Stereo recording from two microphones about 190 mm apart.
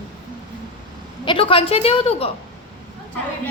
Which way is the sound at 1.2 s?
30° left (ahead or behind).